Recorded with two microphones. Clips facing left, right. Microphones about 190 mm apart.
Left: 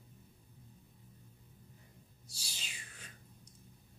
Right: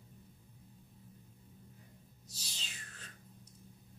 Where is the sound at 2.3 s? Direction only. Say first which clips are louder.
Right 1 dB; 10° left (ahead or behind).